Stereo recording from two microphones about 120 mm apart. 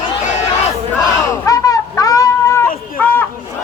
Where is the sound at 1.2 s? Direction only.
30° left (ahead or behind).